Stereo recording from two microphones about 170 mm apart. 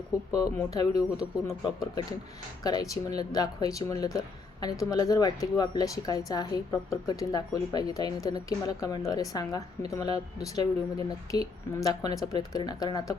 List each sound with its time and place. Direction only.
0.3 s speech: 20° left (ahead or behind)